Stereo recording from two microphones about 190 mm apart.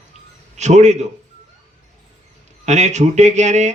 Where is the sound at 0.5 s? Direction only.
35° right (ahead or behind).